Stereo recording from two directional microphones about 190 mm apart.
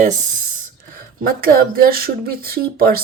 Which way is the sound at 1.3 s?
50° right (ahead or behind).